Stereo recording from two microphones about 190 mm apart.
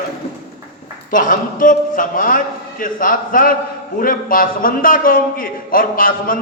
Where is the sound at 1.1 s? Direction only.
45° left (ahead or behind).